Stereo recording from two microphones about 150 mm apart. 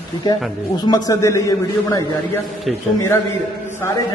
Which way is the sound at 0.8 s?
25° left (ahead or behind).